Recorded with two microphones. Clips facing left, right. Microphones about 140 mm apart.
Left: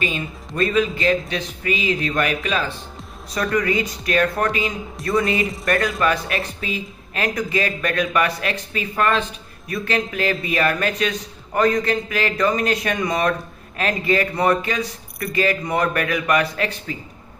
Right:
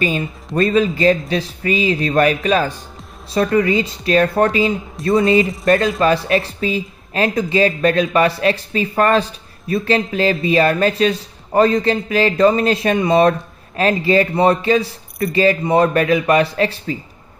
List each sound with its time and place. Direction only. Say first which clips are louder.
0.6 s a man's voice: right 5 dB; 35° right (ahead or behind)
3.3 s speech: right 5 dB; 25° right (ahead or behind)